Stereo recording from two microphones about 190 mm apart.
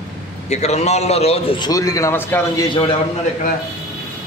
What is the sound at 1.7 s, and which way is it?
Speech, 15° left (ahead or behind).